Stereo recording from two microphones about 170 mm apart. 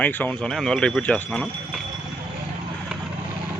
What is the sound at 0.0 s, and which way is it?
Speech, 10° left (ahead or behind).